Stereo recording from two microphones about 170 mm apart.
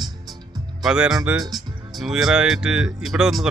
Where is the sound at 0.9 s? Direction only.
5° right (ahead or behind).